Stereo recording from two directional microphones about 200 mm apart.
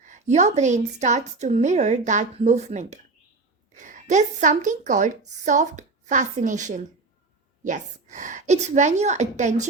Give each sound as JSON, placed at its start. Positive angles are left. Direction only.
{"t": 0.0, "sound": "a woman's voice", "side_deg": -35}